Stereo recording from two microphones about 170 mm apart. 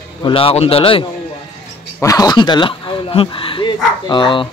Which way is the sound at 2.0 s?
20° left (ahead or behind).